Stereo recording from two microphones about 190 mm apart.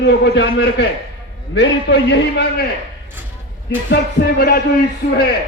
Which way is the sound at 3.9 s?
55° left (ahead or behind).